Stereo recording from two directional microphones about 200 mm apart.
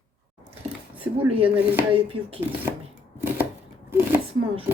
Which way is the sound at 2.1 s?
25° right (ahead or behind).